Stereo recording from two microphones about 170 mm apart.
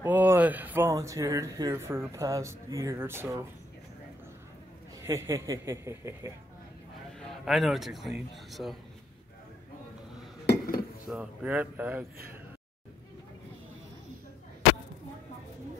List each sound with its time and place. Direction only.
0.0 s speech: 10° right (ahead or behind)
5.0 s speech: 15° right (ahead or behind)
7.2 s speech: centre (ahead or behind)
10.4 s cutlery: 70° left (ahead or behind)
11.1 s speech: 5° right (ahead or behind)